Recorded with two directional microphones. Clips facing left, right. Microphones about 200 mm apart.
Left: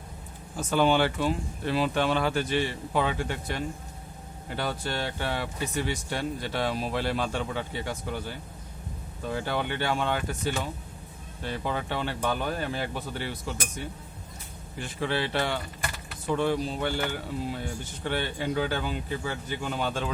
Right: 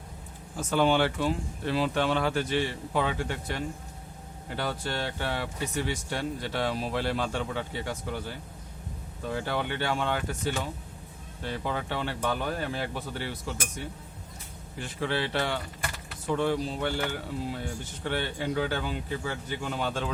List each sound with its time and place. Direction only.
0.5 s speech: 15° left (ahead or behind)
9.3 s speech: 15° left (ahead or behind)
14.8 s speech: 15° left (ahead or behind)